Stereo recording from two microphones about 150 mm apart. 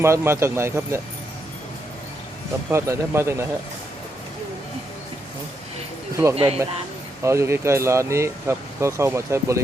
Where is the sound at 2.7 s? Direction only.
15° right (ahead or behind).